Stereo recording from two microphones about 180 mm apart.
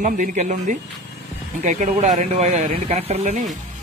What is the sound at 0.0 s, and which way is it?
Speech, 45° right (ahead or behind).